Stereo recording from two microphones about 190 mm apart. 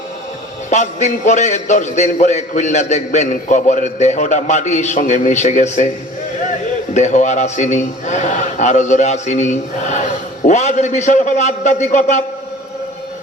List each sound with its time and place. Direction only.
0.7 s a man's voice: 40° left (ahead or behind)
6.9 s a man's voice: 40° left (ahead or behind)